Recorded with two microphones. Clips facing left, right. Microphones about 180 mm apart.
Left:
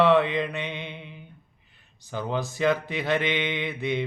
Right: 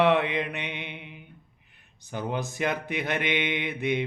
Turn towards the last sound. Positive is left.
turn(degrees=-20)  # may be behind; listen again after turning